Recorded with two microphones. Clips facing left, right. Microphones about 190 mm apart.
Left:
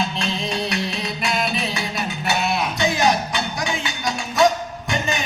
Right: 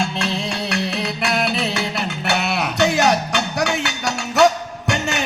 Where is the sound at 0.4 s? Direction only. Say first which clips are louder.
Right 1 dB; 70° right (ahead or behind).